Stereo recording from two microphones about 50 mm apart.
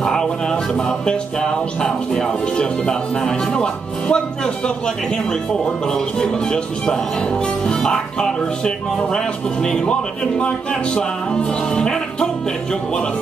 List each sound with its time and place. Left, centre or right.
0.0 s music: centre